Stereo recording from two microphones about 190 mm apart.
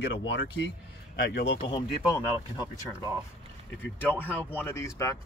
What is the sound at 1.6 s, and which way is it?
Speech, 25° left (ahead or behind).